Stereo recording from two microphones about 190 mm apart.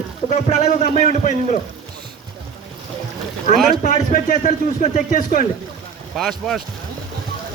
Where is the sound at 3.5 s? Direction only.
40° left (ahead or behind).